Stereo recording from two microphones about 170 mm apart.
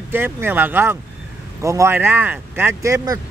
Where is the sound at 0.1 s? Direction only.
10° right (ahead or behind).